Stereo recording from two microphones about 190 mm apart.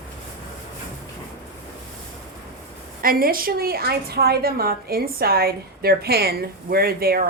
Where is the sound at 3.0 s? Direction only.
50° right (ahead or behind).